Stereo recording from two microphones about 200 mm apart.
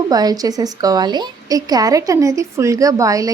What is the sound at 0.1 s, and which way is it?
A woman's voice, 20° right (ahead or behind).